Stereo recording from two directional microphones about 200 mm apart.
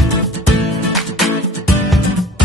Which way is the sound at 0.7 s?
Centre (ahead or behind).